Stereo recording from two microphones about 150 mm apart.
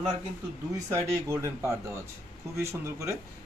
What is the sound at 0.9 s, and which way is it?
A man's voice, 20° right (ahead or behind).